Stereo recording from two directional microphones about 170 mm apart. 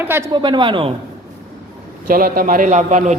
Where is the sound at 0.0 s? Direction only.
15° right (ahead or behind).